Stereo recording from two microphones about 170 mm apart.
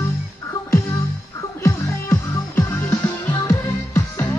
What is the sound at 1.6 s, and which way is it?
Music, 15° left (ahead or behind).